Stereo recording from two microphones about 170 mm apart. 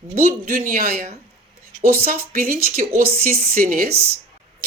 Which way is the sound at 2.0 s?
60° right (ahead or behind).